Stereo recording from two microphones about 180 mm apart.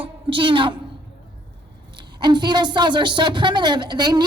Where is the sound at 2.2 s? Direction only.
25° right (ahead or behind).